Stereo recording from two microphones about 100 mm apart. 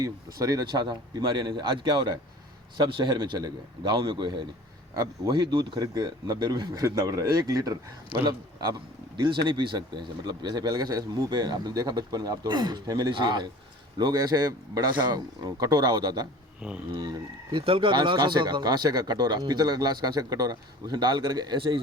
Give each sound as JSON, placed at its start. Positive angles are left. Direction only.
{"t": 0.0, "sound": "speech", "side_deg": -40}
{"t": 9.2, "sound": "speech", "side_deg": -50}
{"t": 16.6, "sound": "speech", "side_deg": -10}
{"t": 16.9, "sound": "speech", "side_deg": -45}
{"t": 17.6, "sound": "speech", "side_deg": -60}